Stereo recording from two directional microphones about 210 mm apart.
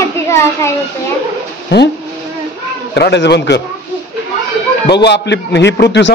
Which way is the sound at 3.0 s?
50° left (ahead or behind).